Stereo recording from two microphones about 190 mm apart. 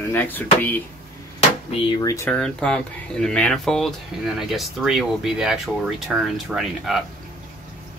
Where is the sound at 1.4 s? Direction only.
30° left (ahead or behind).